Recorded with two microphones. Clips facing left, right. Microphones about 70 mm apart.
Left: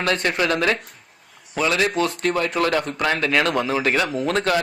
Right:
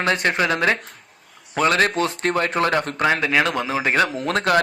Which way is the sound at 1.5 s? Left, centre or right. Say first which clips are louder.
Right 2 dB; right.